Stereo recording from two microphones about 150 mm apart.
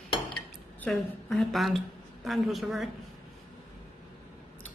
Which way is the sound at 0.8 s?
Centre (ahead or behind).